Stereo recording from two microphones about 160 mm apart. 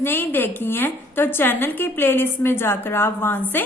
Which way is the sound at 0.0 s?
15° left (ahead or behind).